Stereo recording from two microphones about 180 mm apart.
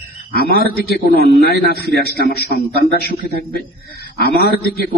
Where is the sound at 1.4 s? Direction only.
60° left (ahead or behind).